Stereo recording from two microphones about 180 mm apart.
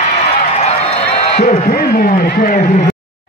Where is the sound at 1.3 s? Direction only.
50° left (ahead or behind).